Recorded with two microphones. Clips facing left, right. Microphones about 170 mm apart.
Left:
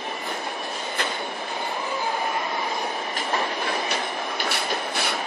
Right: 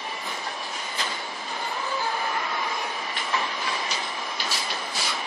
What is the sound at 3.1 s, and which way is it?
Train, 55° left (ahead or behind).